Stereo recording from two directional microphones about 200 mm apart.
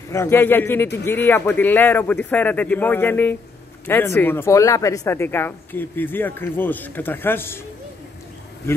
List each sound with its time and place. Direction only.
0.1 s speech: 15° left (ahead or behind)